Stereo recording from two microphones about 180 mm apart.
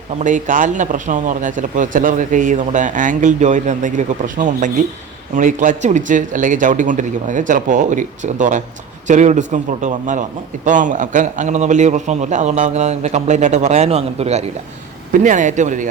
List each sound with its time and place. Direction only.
0.2 s a man's voice: 45° right (ahead or behind)